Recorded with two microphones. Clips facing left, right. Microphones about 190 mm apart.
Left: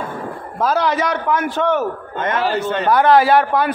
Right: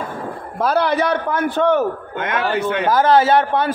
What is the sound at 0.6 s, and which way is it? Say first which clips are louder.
A man's voice: right 1 dB; 60° right (ahead or behind).